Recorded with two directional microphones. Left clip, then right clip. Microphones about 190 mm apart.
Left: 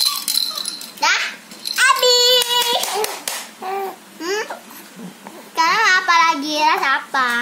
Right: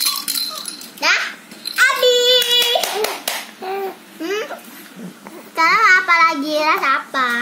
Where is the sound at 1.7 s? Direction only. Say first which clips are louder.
Even; 35° left (ahead or behind).